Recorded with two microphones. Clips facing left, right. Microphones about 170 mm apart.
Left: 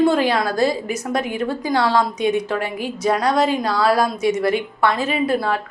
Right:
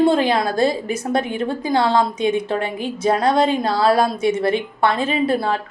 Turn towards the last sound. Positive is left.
turn(degrees=-30)  # may be behind; listen again after turning